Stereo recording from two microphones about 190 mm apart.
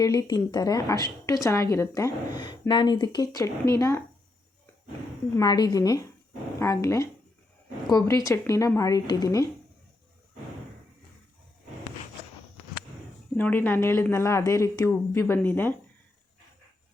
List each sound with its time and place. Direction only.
0.0 s speech: 20° left (ahead or behind)
5.4 s speech: 20° left (ahead or behind)
13.3 s speech: 10° left (ahead or behind)